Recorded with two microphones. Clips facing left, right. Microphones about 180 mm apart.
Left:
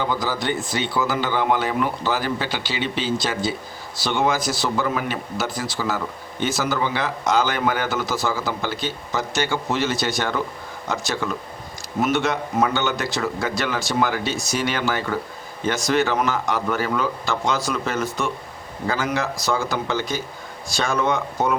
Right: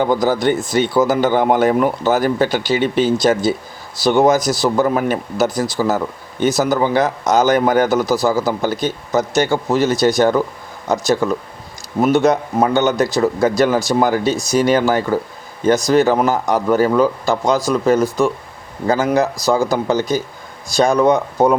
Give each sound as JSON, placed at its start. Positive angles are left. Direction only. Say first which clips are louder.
{"t": 0.0, "sound": "a man's voice", "louder": "right 9 dB", "side_deg": -50}